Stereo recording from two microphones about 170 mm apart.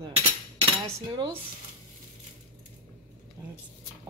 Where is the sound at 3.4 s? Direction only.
20° right (ahead or behind).